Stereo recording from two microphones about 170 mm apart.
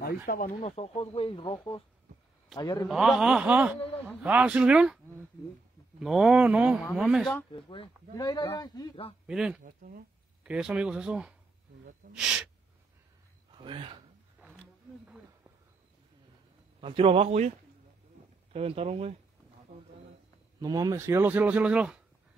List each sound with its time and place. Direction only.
0.0 s speech: 55° left (ahead or behind)
0.6 s speech: 35° left (ahead or behind)
2.9 s speech: centre (ahead or behind)
7.5 s speech: 30° left (ahead or behind)
9.3 s speech: 5° right (ahead or behind)
9.6 s speech: 55° right (ahead or behind)
10.4 s speech: 5° right (ahead or behind)
13.6 s speech: 30° right (ahead or behind)
16.8 s a man's voice: 30° right (ahead or behind)
18.5 s a man's voice: 35° right (ahead or behind)
20.6 s speech: 20° right (ahead or behind); by 22.0 s 5° right (ahead or behind)